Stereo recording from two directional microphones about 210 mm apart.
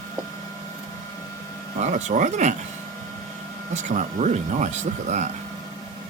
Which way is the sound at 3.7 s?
35° right (ahead or behind).